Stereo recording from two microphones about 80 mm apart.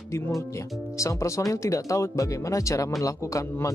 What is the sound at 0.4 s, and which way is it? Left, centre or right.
Speech, left.